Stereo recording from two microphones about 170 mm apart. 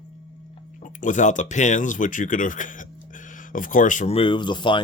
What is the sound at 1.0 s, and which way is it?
Speech, 45° left (ahead or behind).